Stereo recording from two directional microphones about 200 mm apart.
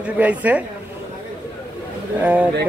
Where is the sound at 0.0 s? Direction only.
5° right (ahead or behind).